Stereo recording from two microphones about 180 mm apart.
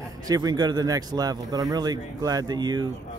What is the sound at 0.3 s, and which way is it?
Speech, 20° right (ahead or behind).